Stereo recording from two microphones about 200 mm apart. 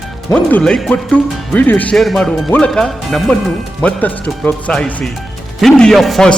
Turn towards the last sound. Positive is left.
turn(degrees=0)  # may be behind; listen again after turning